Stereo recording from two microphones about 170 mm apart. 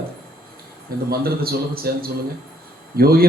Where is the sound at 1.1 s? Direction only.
65° right (ahead or behind).